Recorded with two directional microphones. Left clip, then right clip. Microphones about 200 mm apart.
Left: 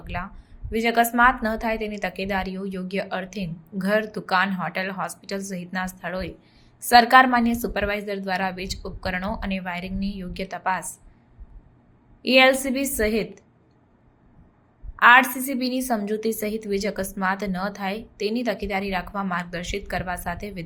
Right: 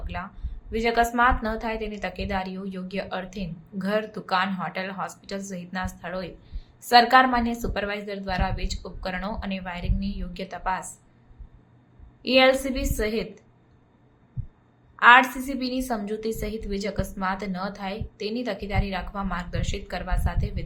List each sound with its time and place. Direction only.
0.1 s a woman's voice: 15° left (ahead or behind)
12.2 s a woman's voice: 15° left (ahead or behind)
14.9 s a woman's voice: 15° left (ahead or behind)